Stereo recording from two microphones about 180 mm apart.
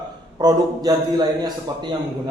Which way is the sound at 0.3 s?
20° right (ahead or behind).